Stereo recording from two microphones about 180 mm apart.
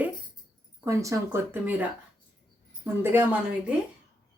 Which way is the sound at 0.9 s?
15° right (ahead or behind).